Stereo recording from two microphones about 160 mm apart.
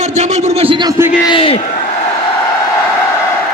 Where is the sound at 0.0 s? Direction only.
45° right (ahead or behind); by 0.9 s 30° right (ahead or behind).